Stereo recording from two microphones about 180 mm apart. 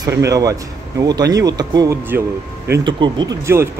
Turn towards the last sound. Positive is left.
turn(degrees=-15)  # may be behind; listen again after turning